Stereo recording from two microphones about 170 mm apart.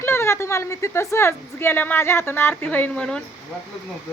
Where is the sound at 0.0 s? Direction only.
15° left (ahead or behind).